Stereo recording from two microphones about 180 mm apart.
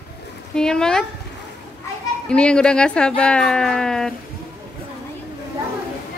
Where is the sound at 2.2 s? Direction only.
5° left (ahead or behind).